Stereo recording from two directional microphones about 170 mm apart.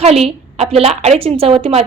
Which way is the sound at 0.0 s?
35° right (ahead or behind).